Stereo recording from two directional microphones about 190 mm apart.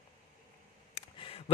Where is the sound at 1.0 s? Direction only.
30° left (ahead or behind).